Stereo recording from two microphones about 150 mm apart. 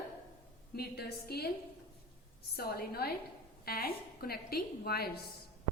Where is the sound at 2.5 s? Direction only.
90° left.